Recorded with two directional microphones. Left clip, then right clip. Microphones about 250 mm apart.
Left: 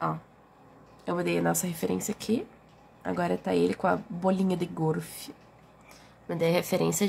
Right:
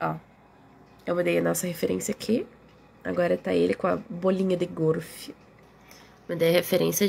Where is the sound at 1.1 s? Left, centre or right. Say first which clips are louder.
Right 4 dB; centre.